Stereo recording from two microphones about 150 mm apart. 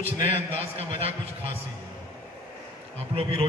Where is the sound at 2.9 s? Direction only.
40° right (ahead or behind).